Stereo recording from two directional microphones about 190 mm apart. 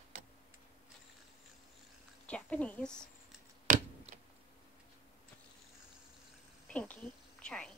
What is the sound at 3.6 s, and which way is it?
Tick, 40° right (ahead or behind).